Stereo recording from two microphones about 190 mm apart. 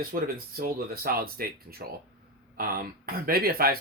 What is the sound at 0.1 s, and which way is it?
Speech, 50° right (ahead or behind).